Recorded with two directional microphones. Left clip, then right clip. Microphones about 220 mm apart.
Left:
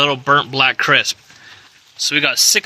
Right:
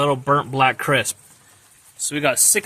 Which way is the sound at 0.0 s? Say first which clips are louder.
Left 4 dB; 5° right (ahead or behind).